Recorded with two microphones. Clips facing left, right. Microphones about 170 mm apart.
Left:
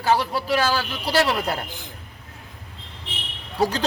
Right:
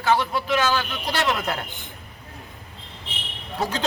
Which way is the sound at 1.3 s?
10° left (ahead or behind).